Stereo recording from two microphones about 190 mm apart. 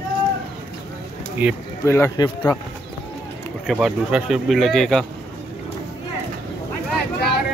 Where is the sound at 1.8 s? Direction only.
15° left (ahead or behind).